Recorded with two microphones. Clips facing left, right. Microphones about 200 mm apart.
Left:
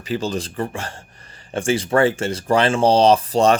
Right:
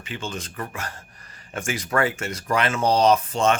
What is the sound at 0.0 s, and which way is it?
Speech, 35° left (ahead or behind).